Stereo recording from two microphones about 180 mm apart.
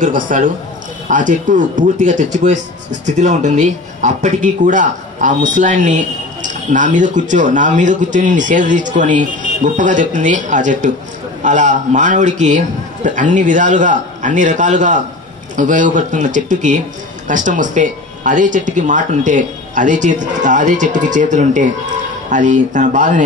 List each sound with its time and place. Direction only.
0.0 s speech: 45° right (ahead or behind)